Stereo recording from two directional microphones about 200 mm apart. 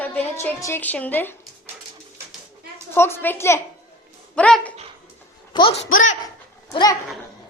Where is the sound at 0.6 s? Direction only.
10° left (ahead or behind).